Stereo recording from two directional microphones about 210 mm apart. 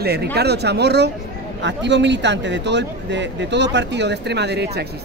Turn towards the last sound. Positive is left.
turn(degrees=-50)  # may be behind; listen again after turning